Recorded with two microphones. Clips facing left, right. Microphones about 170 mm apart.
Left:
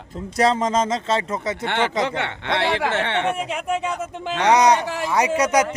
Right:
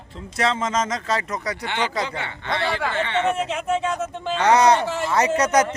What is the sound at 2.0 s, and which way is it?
Speech, 70° left (ahead or behind).